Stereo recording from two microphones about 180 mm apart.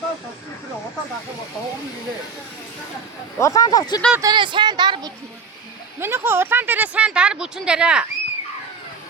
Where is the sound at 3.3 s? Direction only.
15° left (ahead or behind).